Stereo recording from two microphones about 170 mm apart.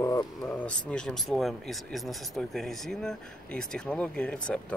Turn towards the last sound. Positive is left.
turn(degrees=5)  # may be behind; listen again after turning